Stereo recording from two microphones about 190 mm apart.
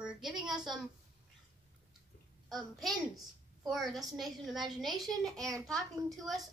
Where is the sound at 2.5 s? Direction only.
Centre (ahead or behind).